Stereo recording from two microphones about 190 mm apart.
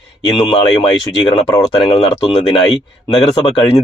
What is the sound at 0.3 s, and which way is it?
Speech, 30° left (ahead or behind).